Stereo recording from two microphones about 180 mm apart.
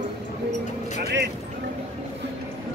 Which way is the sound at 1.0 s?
75° right (ahead or behind).